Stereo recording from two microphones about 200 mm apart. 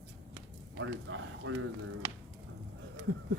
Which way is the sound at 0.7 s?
85° right.